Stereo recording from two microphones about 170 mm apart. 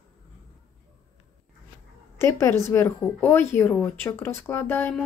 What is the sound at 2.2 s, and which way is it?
A woman's voice, 15° left (ahead or behind).